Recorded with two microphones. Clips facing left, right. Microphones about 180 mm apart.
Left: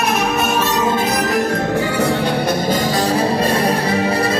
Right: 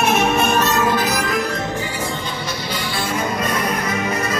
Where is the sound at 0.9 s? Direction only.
25° left (ahead or behind).